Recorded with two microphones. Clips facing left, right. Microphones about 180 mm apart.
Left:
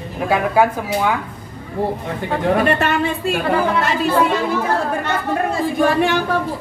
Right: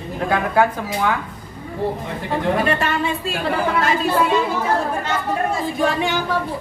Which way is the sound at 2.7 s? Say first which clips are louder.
Left 3 dB; 55° left (ahead or behind).